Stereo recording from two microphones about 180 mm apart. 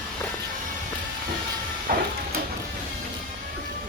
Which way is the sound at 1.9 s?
55° right (ahead or behind).